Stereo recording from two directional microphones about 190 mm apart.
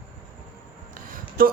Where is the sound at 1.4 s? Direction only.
50° right (ahead or behind).